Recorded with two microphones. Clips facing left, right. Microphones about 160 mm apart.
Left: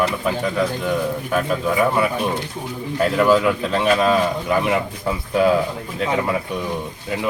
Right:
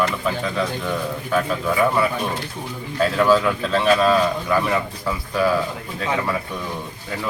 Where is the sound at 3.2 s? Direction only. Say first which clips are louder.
Left 1 dB; 10° left (ahead or behind).